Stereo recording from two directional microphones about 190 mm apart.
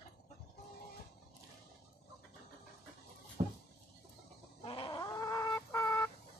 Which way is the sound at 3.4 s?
30° right (ahead or behind).